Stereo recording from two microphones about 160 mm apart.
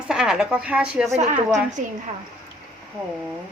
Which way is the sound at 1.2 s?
50° right (ahead or behind).